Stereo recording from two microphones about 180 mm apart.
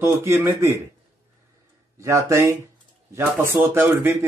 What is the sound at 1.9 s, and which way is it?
Speech, 15° right (ahead or behind).